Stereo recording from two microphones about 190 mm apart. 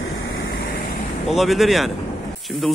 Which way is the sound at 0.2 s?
70° left (ahead or behind).